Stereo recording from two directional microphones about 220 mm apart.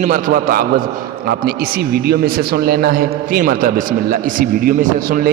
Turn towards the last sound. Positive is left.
turn(degrees=-40)  # may be behind; listen again after turning